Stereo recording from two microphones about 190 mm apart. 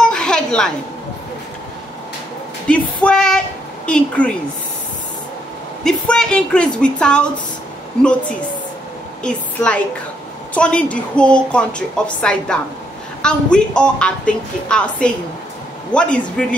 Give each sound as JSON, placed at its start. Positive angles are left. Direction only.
{"t": 0.0, "sound": "a sound", "side_deg": 5}
{"t": 2.7, "sound": "a woman's voice", "side_deg": 5}
{"t": 5.9, "sound": "a woman's voice", "side_deg": 5}